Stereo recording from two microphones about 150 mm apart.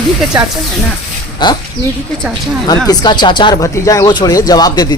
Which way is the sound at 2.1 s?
Centre (ahead or behind).